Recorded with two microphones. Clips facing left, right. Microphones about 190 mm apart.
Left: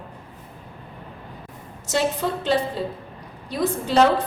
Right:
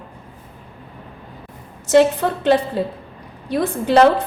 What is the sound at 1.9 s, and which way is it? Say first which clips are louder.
A woman's voice: right 9 dB; 60° right (ahead or behind).